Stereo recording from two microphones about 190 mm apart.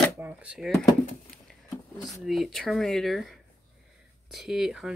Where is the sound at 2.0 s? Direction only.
Centre (ahead or behind).